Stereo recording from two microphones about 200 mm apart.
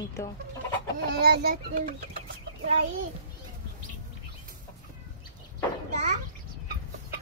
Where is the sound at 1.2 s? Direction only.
50° right (ahead or behind).